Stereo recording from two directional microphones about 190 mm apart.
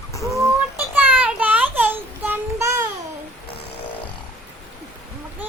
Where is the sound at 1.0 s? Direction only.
5° right (ahead or behind).